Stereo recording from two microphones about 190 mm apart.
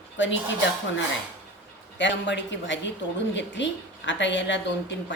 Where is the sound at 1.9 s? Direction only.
70° left (ahead or behind).